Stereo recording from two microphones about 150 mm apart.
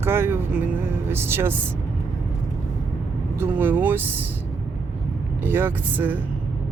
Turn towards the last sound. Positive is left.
turn(degrees=-15)  # may be behind; listen again after turning